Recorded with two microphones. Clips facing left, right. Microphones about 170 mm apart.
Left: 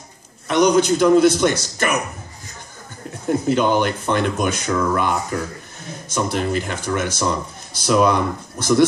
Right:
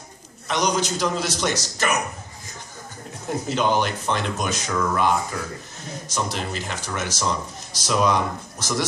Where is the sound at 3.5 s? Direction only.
55° left (ahead or behind).